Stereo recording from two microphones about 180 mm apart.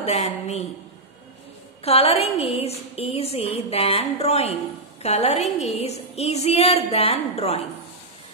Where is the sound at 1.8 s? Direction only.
35° left (ahead or behind).